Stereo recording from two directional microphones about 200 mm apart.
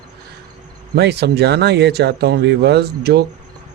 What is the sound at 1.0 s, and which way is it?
Speech, 55° right (ahead or behind).